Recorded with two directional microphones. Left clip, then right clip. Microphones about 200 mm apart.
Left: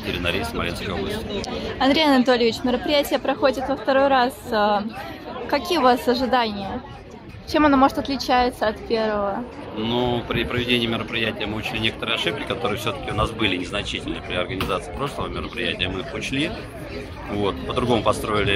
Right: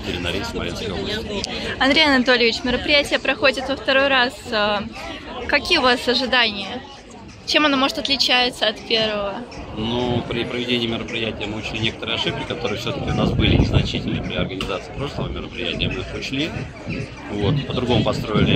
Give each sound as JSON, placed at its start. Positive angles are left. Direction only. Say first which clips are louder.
{"t": 0.1, "sound": "speech", "louder": "left 1 dB", "side_deg": 5}
{"t": 1.4, "sound": "a woman's voice", "louder": "right 2 dB", "side_deg": 15}
{"t": 9.8, "sound": "a man's voice", "louder": "even", "side_deg": 0}